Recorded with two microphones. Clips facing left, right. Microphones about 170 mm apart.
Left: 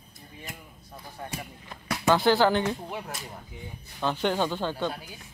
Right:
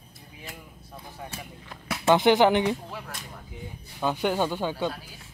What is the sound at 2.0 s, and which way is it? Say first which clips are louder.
Speech: right 2 dB; 20° right (ahead or behind).